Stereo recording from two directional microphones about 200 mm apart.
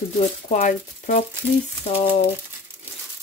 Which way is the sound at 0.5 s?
40° left (ahead or behind).